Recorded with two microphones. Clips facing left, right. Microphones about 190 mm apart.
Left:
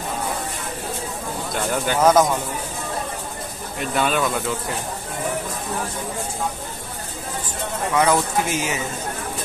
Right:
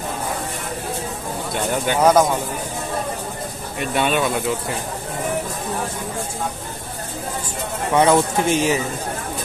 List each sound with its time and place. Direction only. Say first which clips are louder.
1.9 s speech: right 1 dB; 10° right (ahead or behind)
3.9 s speech: right 2 dB; centre (ahead or behind)
7.9 s a man's voice: right 4 dB; 30° right (ahead or behind)